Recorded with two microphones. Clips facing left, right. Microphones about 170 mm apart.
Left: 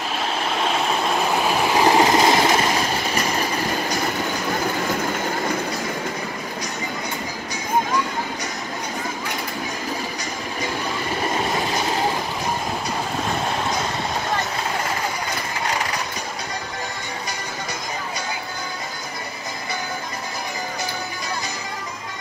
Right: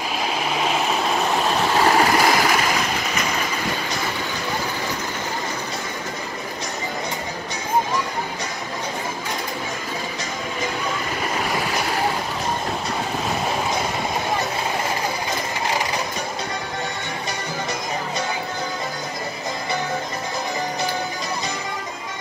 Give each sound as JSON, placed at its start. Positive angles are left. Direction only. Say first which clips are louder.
{"t": 0.4, "sound": "vehicle", "louder": "even", "side_deg": -5}